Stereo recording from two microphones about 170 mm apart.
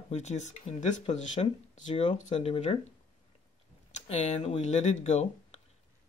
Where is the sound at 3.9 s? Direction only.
40° left (ahead or behind).